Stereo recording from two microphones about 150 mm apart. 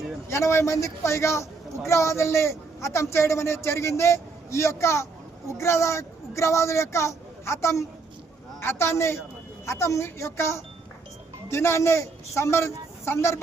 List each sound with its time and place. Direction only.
0.3 s a man's voice: 20° left (ahead or behind)